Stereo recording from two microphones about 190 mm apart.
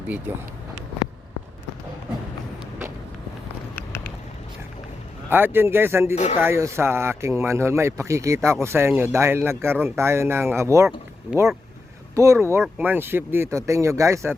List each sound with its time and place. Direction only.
5.3 s speech: 10° right (ahead or behind)
12.1 s speech: 15° right (ahead or behind)